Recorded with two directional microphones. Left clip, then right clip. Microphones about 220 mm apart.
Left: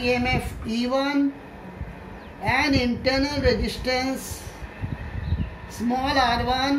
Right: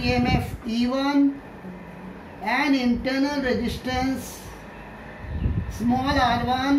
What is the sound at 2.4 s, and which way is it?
Speech, centre (ahead or behind).